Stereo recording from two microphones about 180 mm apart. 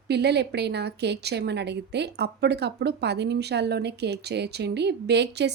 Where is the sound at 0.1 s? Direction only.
65° right (ahead or behind).